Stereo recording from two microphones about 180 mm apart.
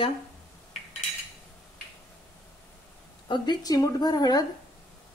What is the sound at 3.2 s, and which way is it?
A woman's voice, 25° left (ahead or behind).